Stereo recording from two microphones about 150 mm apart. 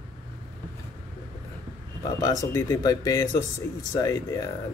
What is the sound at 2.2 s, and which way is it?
Speech, 25° left (ahead or behind).